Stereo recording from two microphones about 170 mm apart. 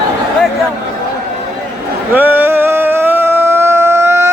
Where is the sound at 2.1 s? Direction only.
10° right (ahead or behind).